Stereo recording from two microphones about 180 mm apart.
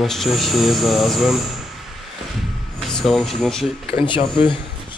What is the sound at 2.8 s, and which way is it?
Speech, centre (ahead or behind).